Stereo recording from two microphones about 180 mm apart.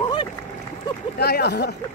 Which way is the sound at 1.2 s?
65° left (ahead or behind).